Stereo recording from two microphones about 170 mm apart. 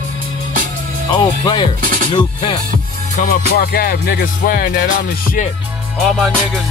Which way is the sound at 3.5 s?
65° left (ahead or behind).